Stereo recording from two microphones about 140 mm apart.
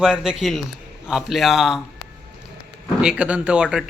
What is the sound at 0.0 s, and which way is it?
A man's voice, 5° right (ahead or behind).